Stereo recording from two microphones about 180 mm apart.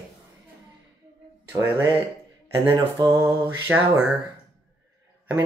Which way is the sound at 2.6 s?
10° right (ahead or behind).